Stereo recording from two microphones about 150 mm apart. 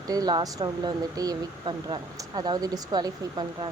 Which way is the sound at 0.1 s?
25° right (ahead or behind).